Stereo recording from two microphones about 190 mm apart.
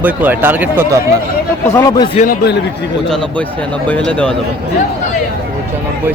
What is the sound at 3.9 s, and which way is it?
Speech, 5° left (ahead or behind).